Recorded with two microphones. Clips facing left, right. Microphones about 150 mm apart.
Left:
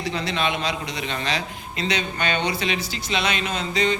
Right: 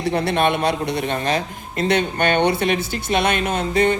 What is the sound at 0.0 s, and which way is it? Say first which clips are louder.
A man's voice: right 6 dB; 60° right (ahead or behind).